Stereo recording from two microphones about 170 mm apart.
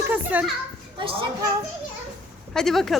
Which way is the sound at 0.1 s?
10° right (ahead or behind).